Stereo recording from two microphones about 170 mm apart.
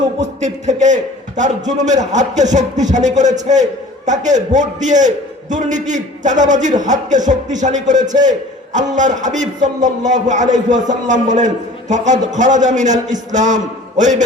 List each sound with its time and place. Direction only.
0.4 s a man's voice: 45° right (ahead or behind)